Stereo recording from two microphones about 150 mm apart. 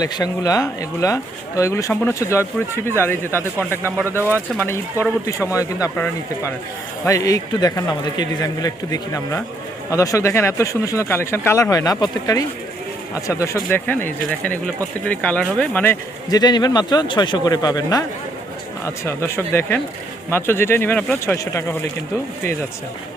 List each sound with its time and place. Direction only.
0.0 s speech: 25° left (ahead or behind)
4.0 s speech: 15° right (ahead or behind)
4.6 s speech: 15° left (ahead or behind)
7.0 s speech: 20° left (ahead or behind)
16.3 s speech: 25° left (ahead or behind)
19.0 s speech: 15° left (ahead or behind)